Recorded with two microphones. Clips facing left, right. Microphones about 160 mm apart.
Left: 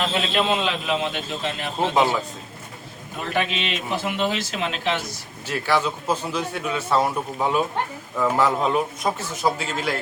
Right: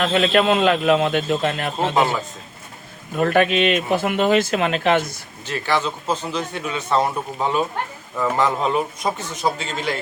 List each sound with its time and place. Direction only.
0.0 s a man's voice: 55° right (ahead or behind)
3.2 s speech: 55° right (ahead or behind)
5.5 s a man's voice: 10° left (ahead or behind)